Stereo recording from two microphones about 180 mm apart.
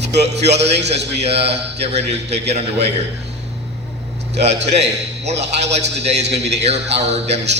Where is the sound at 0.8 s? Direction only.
70° right (ahead or behind).